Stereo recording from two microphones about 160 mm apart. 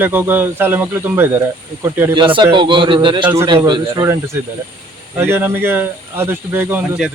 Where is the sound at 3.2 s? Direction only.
20° right (ahead or behind).